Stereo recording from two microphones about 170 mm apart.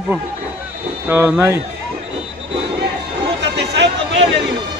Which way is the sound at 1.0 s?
15° right (ahead or behind).